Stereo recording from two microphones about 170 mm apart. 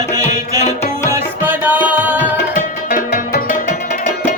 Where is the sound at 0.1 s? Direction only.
20° right (ahead or behind).